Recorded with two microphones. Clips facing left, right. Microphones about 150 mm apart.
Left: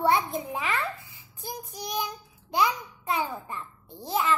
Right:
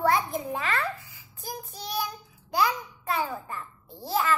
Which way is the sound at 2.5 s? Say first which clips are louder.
Even; 20° left (ahead or behind).